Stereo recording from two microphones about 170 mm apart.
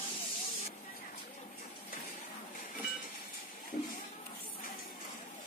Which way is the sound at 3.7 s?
60° left (ahead or behind).